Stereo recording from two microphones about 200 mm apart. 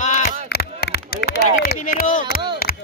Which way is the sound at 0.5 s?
55° left (ahead or behind).